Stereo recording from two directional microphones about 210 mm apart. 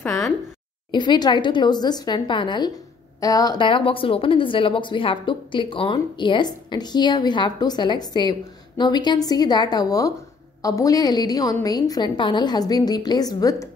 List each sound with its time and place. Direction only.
0.9 s speech: 20° left (ahead or behind)